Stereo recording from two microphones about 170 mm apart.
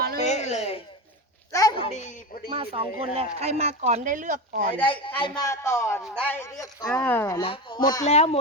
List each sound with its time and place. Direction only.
0.2 s speech: 45° left (ahead or behind)
1.5 s speech: 25° left (ahead or behind); by 2.1 s 40° left (ahead or behind)
2.5 s speech: 35° right (ahead or behind); by 4.7 s 50° right (ahead or behind)
4.9 s speech: 30° left (ahead or behind)
5.4 s speech: 15° left (ahead or behind)
7.4 s speech: 30° left (ahead or behind)